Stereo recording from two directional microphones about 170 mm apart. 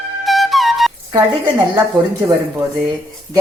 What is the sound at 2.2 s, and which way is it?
Speech, 20° right (ahead or behind).